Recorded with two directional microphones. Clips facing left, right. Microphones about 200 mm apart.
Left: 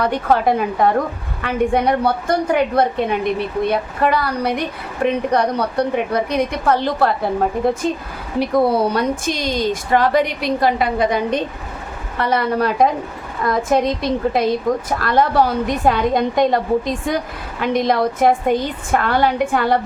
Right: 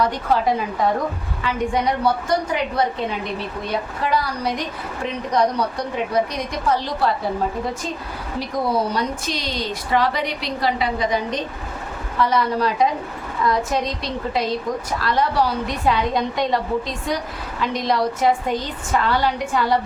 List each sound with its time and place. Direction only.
0.0 s a woman's voice: 60° left (ahead or behind)